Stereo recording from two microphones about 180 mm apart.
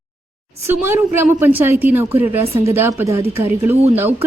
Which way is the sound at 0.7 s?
10° right (ahead or behind).